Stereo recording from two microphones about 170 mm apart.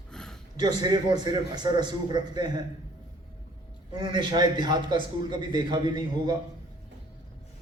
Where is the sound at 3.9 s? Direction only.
25° right (ahead or behind).